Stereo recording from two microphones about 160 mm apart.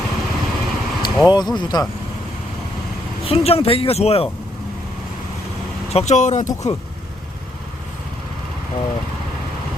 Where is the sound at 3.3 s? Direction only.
35° left (ahead or behind).